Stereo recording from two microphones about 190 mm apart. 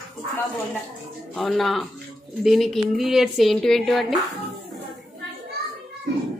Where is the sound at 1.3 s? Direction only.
Centre (ahead or behind).